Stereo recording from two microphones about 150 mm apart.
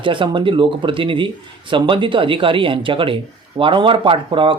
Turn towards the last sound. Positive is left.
turn(degrees=-35)  # may be behind; listen again after turning